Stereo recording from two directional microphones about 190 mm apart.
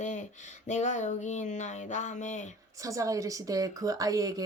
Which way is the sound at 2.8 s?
15° right (ahead or behind).